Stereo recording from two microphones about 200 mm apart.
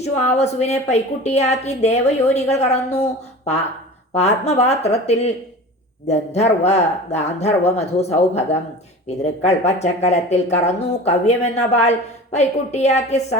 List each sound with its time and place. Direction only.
0.3 s speech: 30° left (ahead or behind)
4.1 s speech: 35° left (ahead or behind)